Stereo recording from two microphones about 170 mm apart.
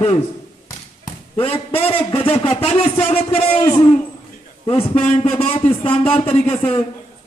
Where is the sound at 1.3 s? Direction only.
35° left (ahead or behind).